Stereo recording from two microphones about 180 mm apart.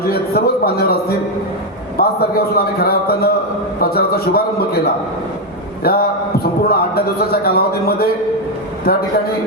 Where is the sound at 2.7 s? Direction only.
55° left (ahead or behind).